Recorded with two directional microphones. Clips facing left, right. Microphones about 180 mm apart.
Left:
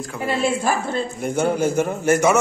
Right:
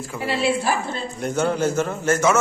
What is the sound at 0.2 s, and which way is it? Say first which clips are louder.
Speech: left 1 dB; 45° left (ahead or behind).